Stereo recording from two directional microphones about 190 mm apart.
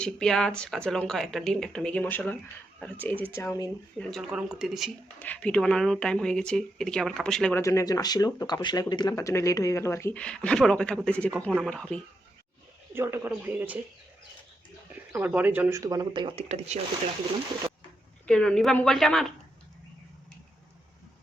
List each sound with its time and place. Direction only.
0.0 s speech: 5° left (ahead or behind)
3.9 s speech: centre (ahead or behind)
7.6 s speech: 15° left (ahead or behind)
12.9 s speech: 10° right (ahead or behind)
15.1 s speech: 10° right (ahead or behind); by 16.8 s 35° right (ahead or behind)
18.3 s speech: 5° left (ahead or behind)